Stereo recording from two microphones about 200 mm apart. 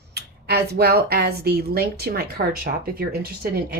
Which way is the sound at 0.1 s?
55° right (ahead or behind).